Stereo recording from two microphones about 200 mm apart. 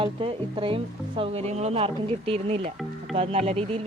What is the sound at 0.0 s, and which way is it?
Speech, 25° right (ahead or behind).